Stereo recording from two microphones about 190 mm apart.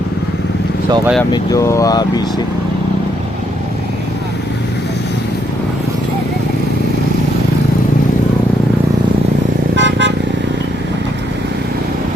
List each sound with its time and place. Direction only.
1.3 s speech: 15° left (ahead or behind)
9.7 s vehicle: 70° right (ahead or behind)